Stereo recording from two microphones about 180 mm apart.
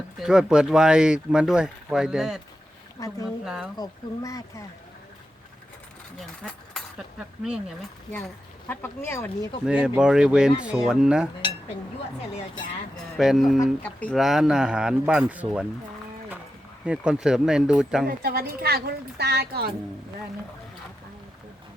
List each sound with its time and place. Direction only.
0.2 s speech: 5° right (ahead or behind)
3.0 s speech: 20° left (ahead or behind)
3.4 s speech: 5° right (ahead or behind)
3.8 s speech: 20° left (ahead or behind)
6.1 s speech: centre (ahead or behind)
8.6 s speech: 10° left (ahead or behind)
9.6 s speech: 5° right (ahead or behind)
13.1 s speech: centre (ahead or behind)
16.8 s speech: 5° right (ahead or behind)
18.0 s a woman's voice: 60° right (ahead or behind)